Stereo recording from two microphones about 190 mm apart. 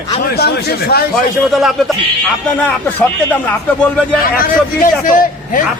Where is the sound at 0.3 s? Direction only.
55° left (ahead or behind).